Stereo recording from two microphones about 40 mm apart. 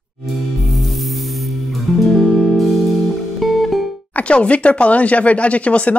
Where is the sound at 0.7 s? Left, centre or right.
Centre.